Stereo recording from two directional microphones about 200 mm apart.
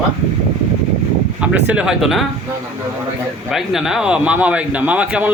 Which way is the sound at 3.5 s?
Centre (ahead or behind).